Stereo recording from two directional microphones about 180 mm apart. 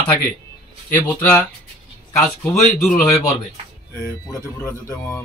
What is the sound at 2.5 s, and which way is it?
Speech, centre (ahead or behind).